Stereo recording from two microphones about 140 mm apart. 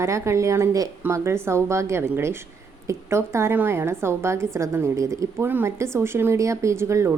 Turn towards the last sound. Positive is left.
turn(degrees=-20)  # may be behind; listen again after turning